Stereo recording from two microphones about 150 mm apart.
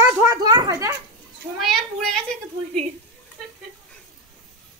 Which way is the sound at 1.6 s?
Centre (ahead or behind).